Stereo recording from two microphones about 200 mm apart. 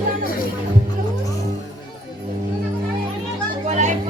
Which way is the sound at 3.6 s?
35° right (ahead or behind).